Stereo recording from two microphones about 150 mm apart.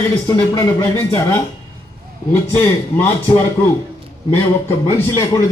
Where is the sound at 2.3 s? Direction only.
15° left (ahead or behind).